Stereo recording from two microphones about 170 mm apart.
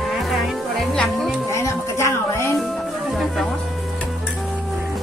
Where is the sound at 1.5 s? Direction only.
15° left (ahead or behind).